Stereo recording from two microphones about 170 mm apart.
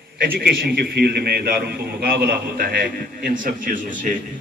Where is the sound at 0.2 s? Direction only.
65° right (ahead or behind).